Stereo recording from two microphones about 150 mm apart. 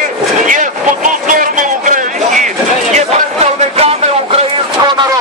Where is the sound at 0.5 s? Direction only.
60° right (ahead or behind).